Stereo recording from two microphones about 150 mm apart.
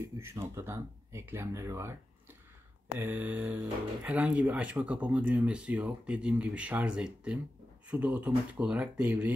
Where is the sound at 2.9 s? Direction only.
15° right (ahead or behind).